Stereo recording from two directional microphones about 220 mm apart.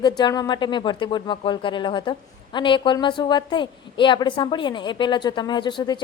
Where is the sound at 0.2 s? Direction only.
20° left (ahead or behind).